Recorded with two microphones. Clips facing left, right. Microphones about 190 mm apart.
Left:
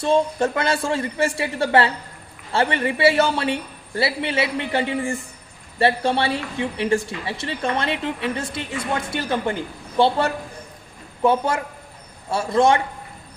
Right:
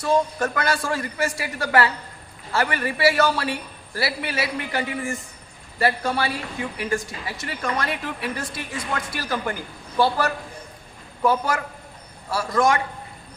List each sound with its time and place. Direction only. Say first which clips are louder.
0.0 s a woman's voice: left 3 dB; 25° left (ahead or behind)